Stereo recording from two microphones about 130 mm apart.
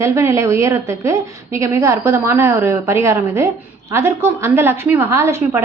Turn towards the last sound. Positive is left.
turn(degrees=-20)  # may be behind; listen again after turning